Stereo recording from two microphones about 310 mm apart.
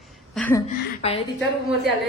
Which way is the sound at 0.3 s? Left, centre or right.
Centre.